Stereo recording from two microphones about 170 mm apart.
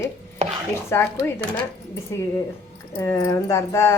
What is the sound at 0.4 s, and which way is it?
Chopping, 40° right (ahead or behind).